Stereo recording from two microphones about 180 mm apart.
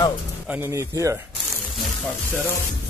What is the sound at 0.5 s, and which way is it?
Speech, 15° right (ahead or behind).